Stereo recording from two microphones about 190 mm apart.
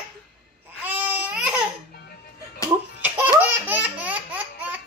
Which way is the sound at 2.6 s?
15° left (ahead or behind).